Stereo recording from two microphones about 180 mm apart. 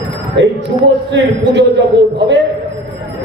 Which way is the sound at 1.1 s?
75° right (ahead or behind).